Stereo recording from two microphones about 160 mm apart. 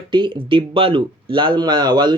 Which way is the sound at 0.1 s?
30° right (ahead or behind).